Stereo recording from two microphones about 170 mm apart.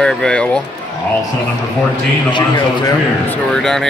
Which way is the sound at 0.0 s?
5° left (ahead or behind).